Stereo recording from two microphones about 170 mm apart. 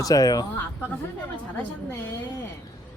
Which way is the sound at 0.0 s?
20° left (ahead or behind).